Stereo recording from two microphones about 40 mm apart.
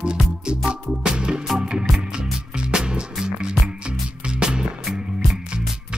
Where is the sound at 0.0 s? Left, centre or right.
Right.